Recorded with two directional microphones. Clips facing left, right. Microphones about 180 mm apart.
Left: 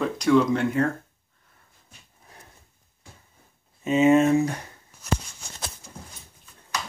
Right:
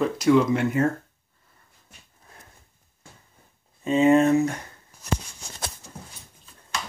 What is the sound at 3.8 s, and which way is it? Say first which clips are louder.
Speech: even; 20° left (ahead or behind).